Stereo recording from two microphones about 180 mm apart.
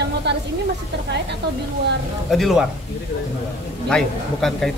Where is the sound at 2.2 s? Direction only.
Centre (ahead or behind).